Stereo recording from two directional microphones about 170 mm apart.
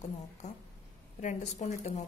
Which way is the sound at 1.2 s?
45° left (ahead or behind).